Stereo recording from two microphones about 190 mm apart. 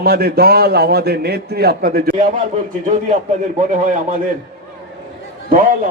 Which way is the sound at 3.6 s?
40° right (ahead or behind).